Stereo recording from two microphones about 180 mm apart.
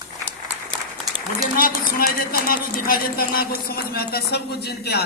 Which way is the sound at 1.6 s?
55° left (ahead or behind).